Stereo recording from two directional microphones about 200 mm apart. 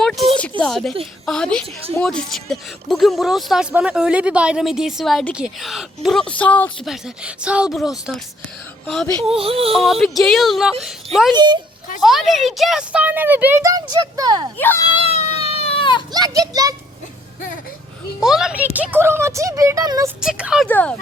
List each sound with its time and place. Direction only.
0.0 s a sound: centre (ahead or behind)
0.6 s a woman's voice: centre (ahead or behind)
9.3 s a sound: 30° right (ahead or behind)
9.8 s a woman's voice: centre (ahead or behind)
11.3 s a sound: 20° right (ahead or behind)
12.0 s speech: centre (ahead or behind); by 14.4 s 20° right (ahead or behind)
14.9 s baby cry: 30° left (ahead or behind)
16.1 s speech: 20° right (ahead or behind)
18.2 s speech: 5° right (ahead or behind); by 20.1 s 20° right (ahead or behind)
20.2 s a woman's voice: 5° right (ahead or behind)
20.7 s speech: 10° left (ahead or behind)